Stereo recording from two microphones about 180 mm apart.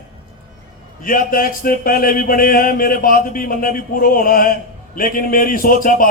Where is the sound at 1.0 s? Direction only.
50° left (ahead or behind).